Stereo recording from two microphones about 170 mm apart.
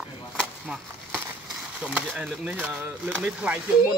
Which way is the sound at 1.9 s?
5° right (ahead or behind).